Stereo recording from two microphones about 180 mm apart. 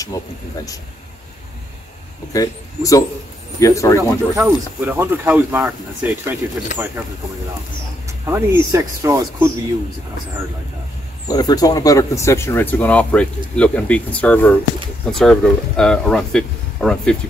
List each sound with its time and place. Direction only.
2.3 s speech: 20° left (ahead or behind)
4.4 s speech: 10° right (ahead or behind)
8.3 s speech: 20° right (ahead or behind)
11.2 s speech: 20° left (ahead or behind); by 17.2 s 5° left (ahead or behind)